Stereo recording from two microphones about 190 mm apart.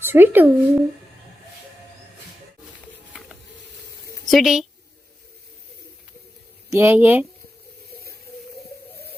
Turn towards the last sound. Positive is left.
turn(degrees=-10)  # may be behind; listen again after turning